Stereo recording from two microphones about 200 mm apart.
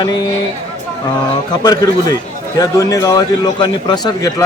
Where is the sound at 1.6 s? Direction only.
20° left (ahead or behind).